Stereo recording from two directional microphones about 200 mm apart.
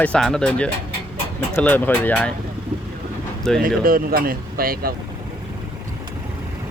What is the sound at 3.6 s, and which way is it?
Speech, 45° right (ahead or behind).